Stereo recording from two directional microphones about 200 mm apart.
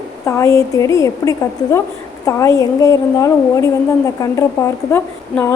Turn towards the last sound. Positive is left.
turn(degrees=15)  # may be behind; listen again after turning